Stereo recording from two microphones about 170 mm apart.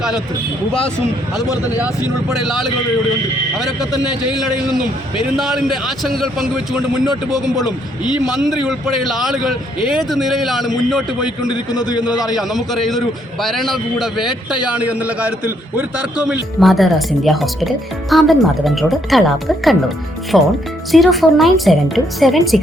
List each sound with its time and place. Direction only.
1.4 s speech: 20° left (ahead or behind)
2.3 s a man's voice: centre (ahead or behind)
4.4 s a man's voice: 5° right (ahead or behind)
8.4 s a man's voice: centre (ahead or behind)
11.7 s speech: 25° left (ahead or behind)
12.2 s a man's voice: centre (ahead or behind)